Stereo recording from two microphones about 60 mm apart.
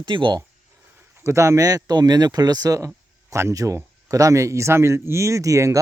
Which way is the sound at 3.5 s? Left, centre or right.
Right.